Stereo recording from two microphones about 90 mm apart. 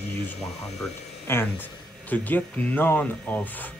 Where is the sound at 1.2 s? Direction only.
25° left (ahead or behind).